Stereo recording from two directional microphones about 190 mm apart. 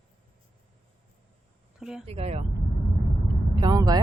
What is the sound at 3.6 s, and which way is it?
Vehicle, 20° right (ahead or behind).